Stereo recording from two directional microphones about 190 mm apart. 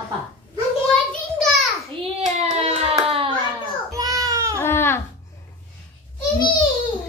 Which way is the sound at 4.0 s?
20° right (ahead or behind).